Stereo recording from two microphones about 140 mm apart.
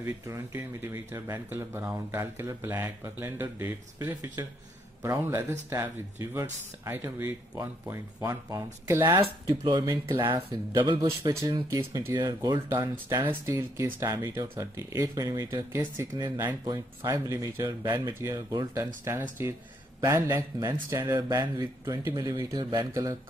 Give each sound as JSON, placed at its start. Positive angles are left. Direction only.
{"t": 0.0, "sound": "speech", "side_deg": -20}
{"t": 11.2, "sound": "speech", "side_deg": -25}